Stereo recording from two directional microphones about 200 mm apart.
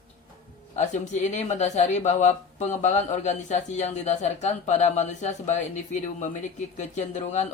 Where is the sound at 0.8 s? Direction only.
35° left (ahead or behind).